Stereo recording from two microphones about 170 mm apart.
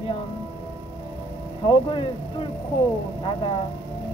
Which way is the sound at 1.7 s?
30° left (ahead or behind).